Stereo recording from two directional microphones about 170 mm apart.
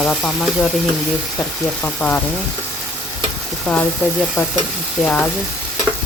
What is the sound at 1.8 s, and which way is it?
Speech, 10° left (ahead or behind).